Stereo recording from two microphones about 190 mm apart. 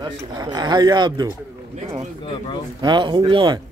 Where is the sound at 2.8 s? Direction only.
25° right (ahead or behind).